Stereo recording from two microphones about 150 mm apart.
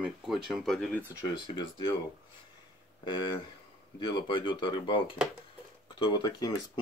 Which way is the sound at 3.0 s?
35° left (ahead or behind).